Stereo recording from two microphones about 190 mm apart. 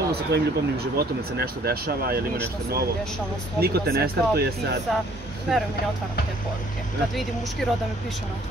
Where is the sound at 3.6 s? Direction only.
55° right (ahead or behind).